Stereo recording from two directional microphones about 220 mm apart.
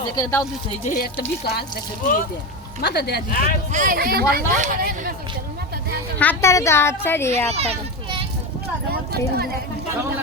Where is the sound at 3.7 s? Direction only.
35° right (ahead or behind).